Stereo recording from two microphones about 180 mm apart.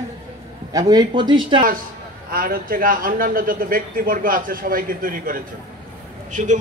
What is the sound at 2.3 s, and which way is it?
Speech, 50° right (ahead or behind).